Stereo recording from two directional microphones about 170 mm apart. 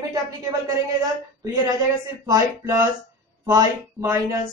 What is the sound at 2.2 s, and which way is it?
A woman's voice, 20° right (ahead or behind).